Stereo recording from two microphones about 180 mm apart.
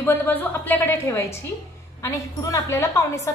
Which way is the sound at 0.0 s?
10° left (ahead or behind).